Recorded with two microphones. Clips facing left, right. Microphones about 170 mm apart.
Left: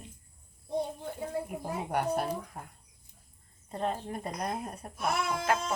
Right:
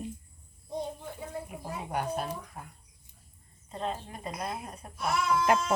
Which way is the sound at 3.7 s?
50° left (ahead or behind).